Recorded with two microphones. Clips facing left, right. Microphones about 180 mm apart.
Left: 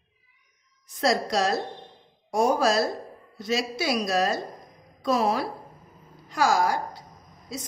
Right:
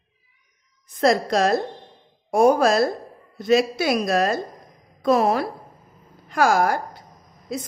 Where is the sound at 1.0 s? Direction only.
55° right (ahead or behind).